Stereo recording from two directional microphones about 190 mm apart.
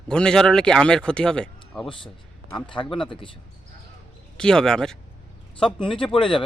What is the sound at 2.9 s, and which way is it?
Speech, 25° left (ahead or behind).